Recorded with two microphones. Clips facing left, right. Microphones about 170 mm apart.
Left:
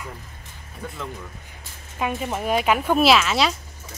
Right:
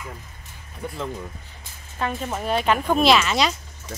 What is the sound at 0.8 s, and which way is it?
Speech, 15° right (ahead or behind).